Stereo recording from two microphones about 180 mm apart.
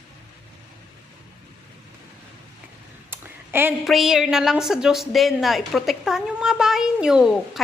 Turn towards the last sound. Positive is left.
turn(degrees=-5)  # may be behind; listen again after turning